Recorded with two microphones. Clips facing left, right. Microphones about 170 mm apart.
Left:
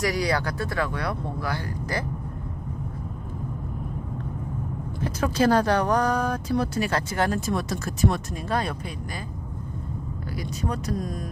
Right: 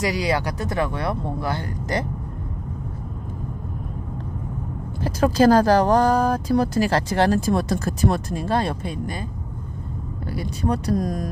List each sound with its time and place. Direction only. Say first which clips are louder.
0.0 s speech: right 2 dB; 20° right (ahead or behind)
5.0 s speech: right 6 dB; 35° right (ahead or behind)
10.3 s speech: right 6 dB; 30° right (ahead or behind)